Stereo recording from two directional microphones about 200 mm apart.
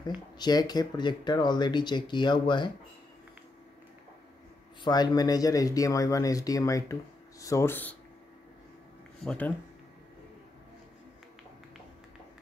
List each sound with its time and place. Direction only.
0.0 s speech: 20° left (ahead or behind)
4.8 s speech: 20° left (ahead or behind)
9.2 s speech: 5° left (ahead or behind)